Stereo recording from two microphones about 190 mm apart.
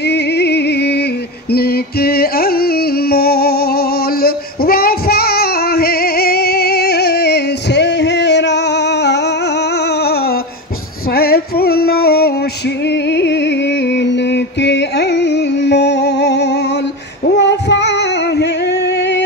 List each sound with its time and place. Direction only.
0.0 s music: 60° left (ahead or behind)
11.1 s music: 55° left (ahead or behind)
17.2 s female singing: 65° left (ahead or behind)